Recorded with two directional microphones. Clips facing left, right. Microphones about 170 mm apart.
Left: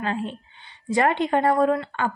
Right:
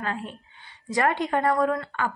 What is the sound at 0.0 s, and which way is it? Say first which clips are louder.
A woman's voice: left 4 dB; 25° left (ahead or behind).